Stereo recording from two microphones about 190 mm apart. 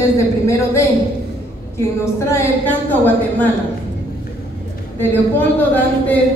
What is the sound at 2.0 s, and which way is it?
A woman's voice, 10° left (ahead or behind).